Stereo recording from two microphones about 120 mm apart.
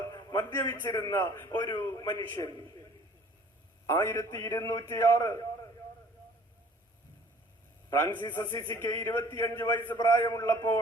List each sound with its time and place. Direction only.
0.1 s a sound: 30° left (ahead or behind)
0.3 s a man's voice: 20° left (ahead or behind)
3.8 s a man's voice: 20° left (ahead or behind)
7.9 s a man's voice: 25° left (ahead or behind)